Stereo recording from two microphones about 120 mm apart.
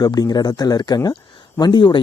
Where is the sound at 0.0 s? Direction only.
35° left (ahead or behind).